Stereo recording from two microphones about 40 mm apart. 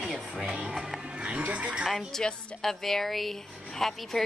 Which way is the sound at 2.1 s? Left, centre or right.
Centre.